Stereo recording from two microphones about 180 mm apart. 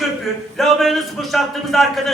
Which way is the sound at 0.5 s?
Centre (ahead or behind).